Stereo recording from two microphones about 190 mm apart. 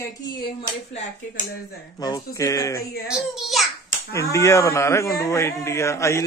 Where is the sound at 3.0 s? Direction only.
Centre (ahead or behind).